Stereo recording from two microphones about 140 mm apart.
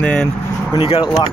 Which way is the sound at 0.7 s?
40° left (ahead or behind).